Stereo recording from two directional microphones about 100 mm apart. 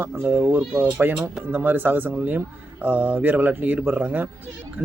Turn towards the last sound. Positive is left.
turn(degrees=-15)  # may be behind; listen again after turning